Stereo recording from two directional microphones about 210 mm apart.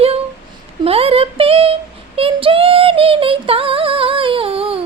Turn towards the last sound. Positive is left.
turn(degrees=-25)  # may be behind; listen again after turning